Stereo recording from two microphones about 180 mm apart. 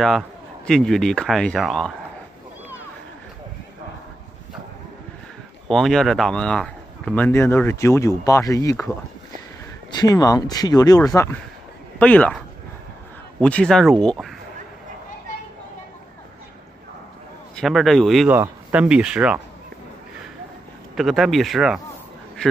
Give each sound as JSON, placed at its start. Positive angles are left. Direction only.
{"t": 0.7, "sound": "speech", "side_deg": 5}
{"t": 5.7, "sound": "a man's voice", "side_deg": 0}
{"t": 13.4, "sound": "speech", "side_deg": 5}
{"t": 17.6, "sound": "speech", "side_deg": 0}
{"t": 20.9, "sound": "speech", "side_deg": 0}